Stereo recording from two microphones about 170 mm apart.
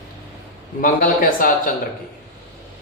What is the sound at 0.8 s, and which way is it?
Speech, 50° left (ahead or behind).